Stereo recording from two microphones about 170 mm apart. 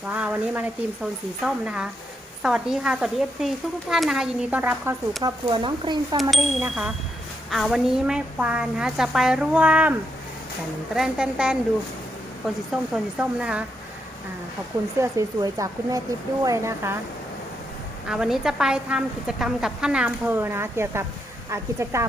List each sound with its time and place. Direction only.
0.1 s a woman's voice: 10° right (ahead or behind)
5.2 s speech: 30° right (ahead or behind)
6.3 s a woman's voice: centre (ahead or behind)
10.9 s a woman's voice: 5° right (ahead or behind)
12.7 s a woman's voice: 5° right (ahead or behind)
15.0 s speech: 15° right (ahead or behind)
18.1 s a woman's voice: 5° right (ahead or behind)